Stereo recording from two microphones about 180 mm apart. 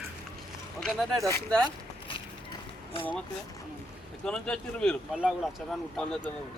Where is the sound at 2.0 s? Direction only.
30° left (ahead or behind).